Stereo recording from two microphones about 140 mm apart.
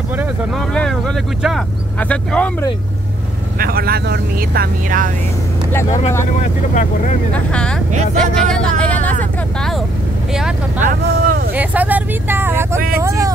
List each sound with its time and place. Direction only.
0.6 s speech: 5° left (ahead or behind)
3.5 s speech: 90° right; by 5.1 s 70° right (ahead or behind)
5.7 s speech: 20° left (ahead or behind)
6.7 s speech: 60° left (ahead or behind)
7.3 s speech: 5° left (ahead or behind)
10.8 s speech: 80° right
11.5 s speech: 10° right (ahead or behind)